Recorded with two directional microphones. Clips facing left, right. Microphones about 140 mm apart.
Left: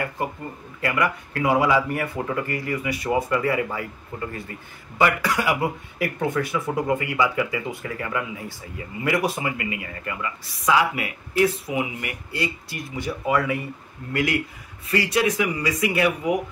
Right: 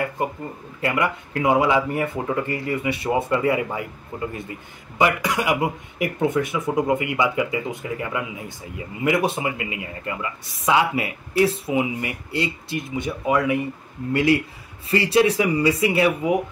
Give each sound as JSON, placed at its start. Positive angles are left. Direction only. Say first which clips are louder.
{"t": 0.8, "sound": "a man's voice", "louder": "right 1 dB", "side_deg": -25}
{"t": 14.1, "sound": "speech", "louder": "right 5 dB", "side_deg": -30}